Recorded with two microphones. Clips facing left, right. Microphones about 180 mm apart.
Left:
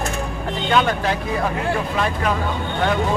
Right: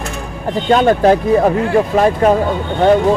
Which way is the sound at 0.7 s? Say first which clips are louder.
Right 9 dB; 40° right (ahead or behind).